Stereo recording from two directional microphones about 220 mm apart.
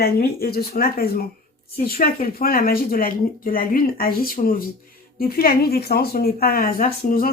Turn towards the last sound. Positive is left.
turn(degrees=40)  # may be behind; listen again after turning